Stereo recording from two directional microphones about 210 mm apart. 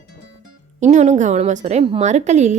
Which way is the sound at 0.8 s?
35° right (ahead or behind).